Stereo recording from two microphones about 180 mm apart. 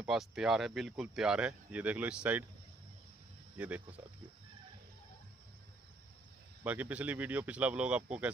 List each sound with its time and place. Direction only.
0.0 s speech: centre (ahead or behind)
3.5 s speech: 10° right (ahead or behind)
6.6 s speech: 10° right (ahead or behind)